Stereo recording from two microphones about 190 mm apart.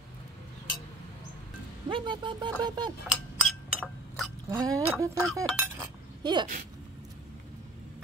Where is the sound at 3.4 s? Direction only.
Centre (ahead or behind).